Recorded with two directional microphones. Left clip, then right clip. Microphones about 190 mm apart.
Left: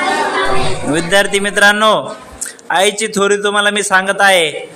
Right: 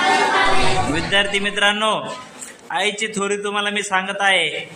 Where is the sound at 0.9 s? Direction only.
25° left (ahead or behind).